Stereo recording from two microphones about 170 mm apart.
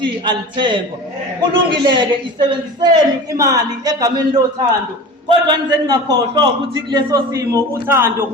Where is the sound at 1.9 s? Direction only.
25° right (ahead or behind).